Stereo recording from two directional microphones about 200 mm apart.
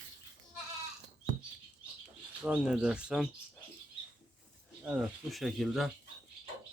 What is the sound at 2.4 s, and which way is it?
Speech, 5° right (ahead or behind).